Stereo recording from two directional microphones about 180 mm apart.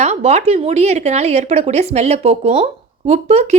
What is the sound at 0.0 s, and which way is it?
A woman's voice, 35° right (ahead or behind).